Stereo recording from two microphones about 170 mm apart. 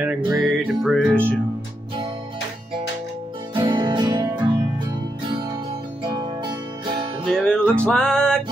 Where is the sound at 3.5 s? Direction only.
25° right (ahead or behind).